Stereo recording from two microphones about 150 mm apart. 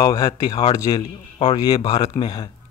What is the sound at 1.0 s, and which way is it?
Speech, 35° left (ahead or behind).